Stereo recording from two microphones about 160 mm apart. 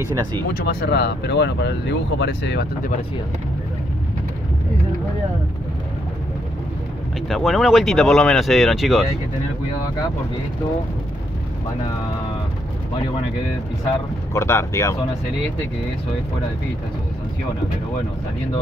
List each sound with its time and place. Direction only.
0.7 s speech: 80° left
7.2 s speech: centre (ahead or behind)
14.3 s speech: 15° left (ahead or behind)